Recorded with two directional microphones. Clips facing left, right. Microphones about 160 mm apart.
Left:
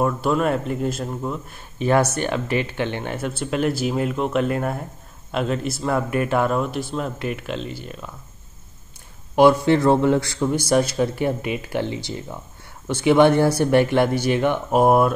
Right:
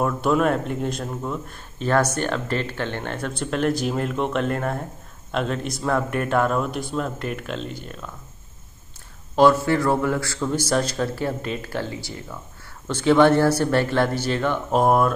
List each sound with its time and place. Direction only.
0.0 s a man's voice: centre (ahead or behind)
9.3 s speech: 15° left (ahead or behind)
9.7 s speech: 25° left (ahead or behind); by 15.1 s 5° left (ahead or behind)